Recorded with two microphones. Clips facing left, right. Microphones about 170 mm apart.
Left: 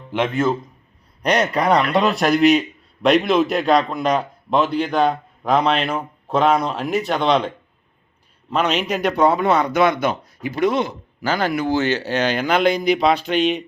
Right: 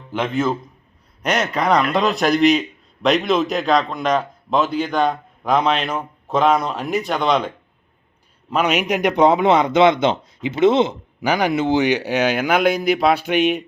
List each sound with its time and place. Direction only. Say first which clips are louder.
0.1 s a man's voice: left 1 dB; centre (ahead or behind)